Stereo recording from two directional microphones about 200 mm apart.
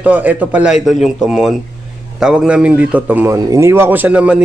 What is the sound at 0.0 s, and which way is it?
A man's voice, 10° right (ahead or behind).